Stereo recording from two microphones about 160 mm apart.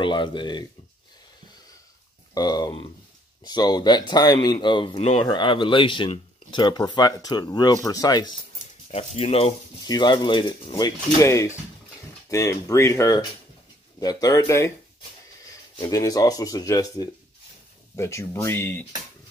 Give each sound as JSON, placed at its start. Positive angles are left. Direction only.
{"t": 0.0, "sound": "speech", "side_deg": 30}
{"t": 2.3, "sound": "speech", "side_deg": 25}
{"t": 8.9, "sound": "speech", "side_deg": 40}
{"t": 9.8, "sound": "speech", "side_deg": 25}
{"t": 15.8, "sound": "speech", "side_deg": 20}